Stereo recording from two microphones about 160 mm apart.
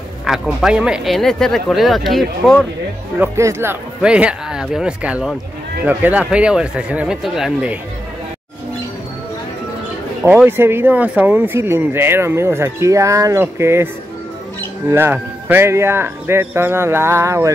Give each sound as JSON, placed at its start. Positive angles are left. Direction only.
{"t": 0.3, "sound": "speech", "side_deg": -5}
{"t": 3.2, "sound": "speech", "side_deg": -15}
{"t": 10.2, "sound": "speech", "side_deg": -15}
{"t": 14.9, "sound": "speech", "side_deg": -15}